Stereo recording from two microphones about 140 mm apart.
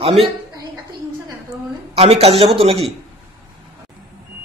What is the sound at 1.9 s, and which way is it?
Speech, 45° right (ahead or behind).